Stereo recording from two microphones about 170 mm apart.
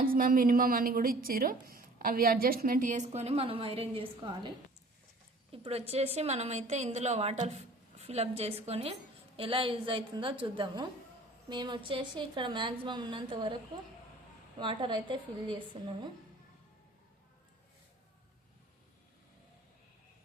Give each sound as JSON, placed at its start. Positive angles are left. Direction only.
{"t": 0.0, "sound": "a woman's voice", "side_deg": -55}
{"t": 14.6, "sound": "a woman's voice", "side_deg": -30}